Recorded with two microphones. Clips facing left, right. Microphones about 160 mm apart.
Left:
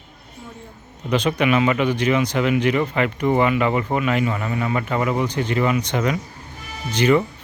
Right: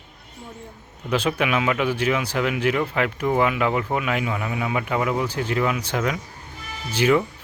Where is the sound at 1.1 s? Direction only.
5° right (ahead or behind).